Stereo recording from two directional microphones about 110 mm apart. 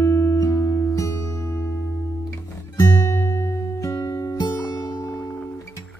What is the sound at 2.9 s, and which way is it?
Music, 25° left (ahead or behind).